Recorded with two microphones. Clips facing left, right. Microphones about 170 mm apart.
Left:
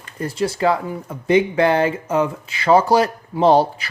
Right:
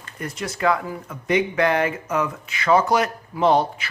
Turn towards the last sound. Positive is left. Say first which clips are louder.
# left 4 dB
turn(degrees=35)  # may be behind; listen again after turning